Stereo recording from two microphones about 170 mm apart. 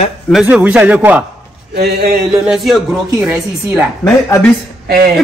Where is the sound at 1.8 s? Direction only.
70° right (ahead or behind).